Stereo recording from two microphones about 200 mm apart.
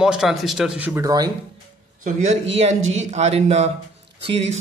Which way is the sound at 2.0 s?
40° right (ahead or behind).